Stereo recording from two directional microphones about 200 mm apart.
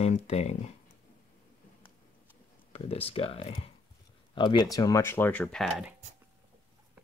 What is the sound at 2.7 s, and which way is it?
Speech, 30° left (ahead or behind).